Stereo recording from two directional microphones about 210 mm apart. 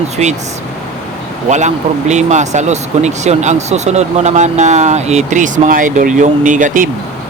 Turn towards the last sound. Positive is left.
turn(degrees=-40)  # may be behind; listen again after turning